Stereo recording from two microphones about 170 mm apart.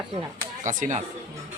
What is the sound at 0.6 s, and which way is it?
Speech, 50° right (ahead or behind).